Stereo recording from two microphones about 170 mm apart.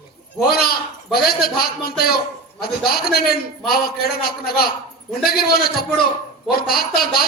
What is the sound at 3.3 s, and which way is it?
A man's voice, 65° left (ahead or behind).